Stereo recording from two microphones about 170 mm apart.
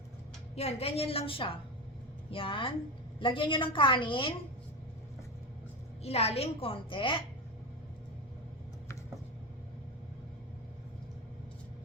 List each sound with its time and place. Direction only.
0.5 s a woman's voice: 35° left (ahead or behind)
6.0 s a woman's voice: 35° left (ahead or behind)